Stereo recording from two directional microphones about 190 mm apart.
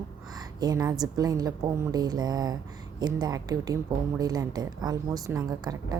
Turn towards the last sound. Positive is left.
turn(degrees=-20)  # may be behind; listen again after turning